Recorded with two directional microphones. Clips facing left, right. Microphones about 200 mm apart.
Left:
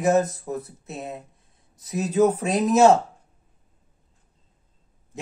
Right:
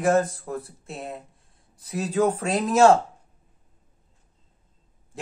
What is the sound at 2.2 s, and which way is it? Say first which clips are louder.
Speech: left 3 dB; 5° left (ahead or behind).